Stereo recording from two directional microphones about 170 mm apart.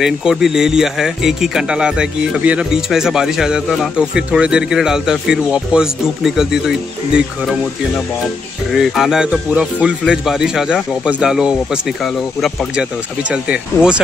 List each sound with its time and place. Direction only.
0.0 s speech: 5° right (ahead or behind)